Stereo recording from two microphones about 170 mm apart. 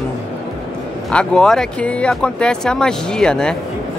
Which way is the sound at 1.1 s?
5° left (ahead or behind).